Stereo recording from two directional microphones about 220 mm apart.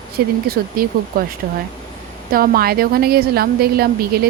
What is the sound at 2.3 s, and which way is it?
A woman's voice, 40° right (ahead or behind).